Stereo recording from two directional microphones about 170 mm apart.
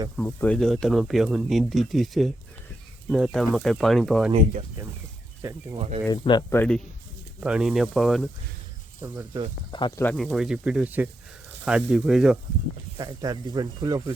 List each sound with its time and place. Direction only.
0.2 s speech: 10° left (ahead or behind)
5.4 s speech: 20° right (ahead or behind)
6.1 s speech: 25° left (ahead or behind)
6.6 s speech: 5° left (ahead or behind)
9.0 s speech: 15° right (ahead or behind)
9.7 s speech: 25° left (ahead or behind)
10.0 s speech: 10° left (ahead or behind)
10.2 s speech: 5° right (ahead or behind)
13.0 s speech: 25° right (ahead or behind)